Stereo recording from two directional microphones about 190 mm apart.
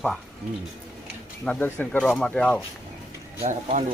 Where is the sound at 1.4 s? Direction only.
10° left (ahead or behind).